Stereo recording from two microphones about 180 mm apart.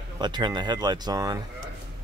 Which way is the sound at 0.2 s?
25° right (ahead or behind).